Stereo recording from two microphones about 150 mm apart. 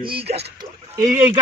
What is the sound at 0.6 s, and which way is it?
Speech, 25° right (ahead or behind).